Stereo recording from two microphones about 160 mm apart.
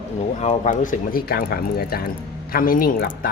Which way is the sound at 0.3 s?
45° left (ahead or behind).